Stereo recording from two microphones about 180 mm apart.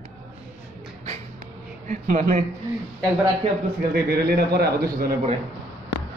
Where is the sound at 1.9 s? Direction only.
45° right (ahead or behind).